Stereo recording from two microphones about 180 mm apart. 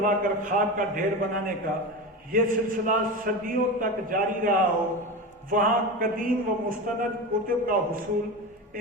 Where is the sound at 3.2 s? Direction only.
50° right (ahead or behind).